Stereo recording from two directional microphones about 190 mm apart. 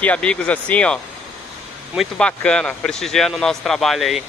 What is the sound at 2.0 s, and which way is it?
Speech, 5° left (ahead or behind).